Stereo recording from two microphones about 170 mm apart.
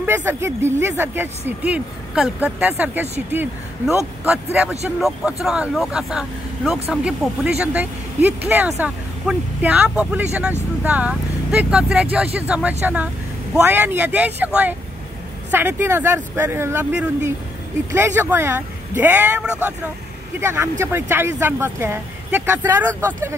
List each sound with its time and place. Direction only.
0.0 s speech: 10° right (ahead or behind)